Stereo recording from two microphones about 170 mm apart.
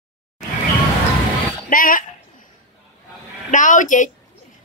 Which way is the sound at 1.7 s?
55° left (ahead or behind).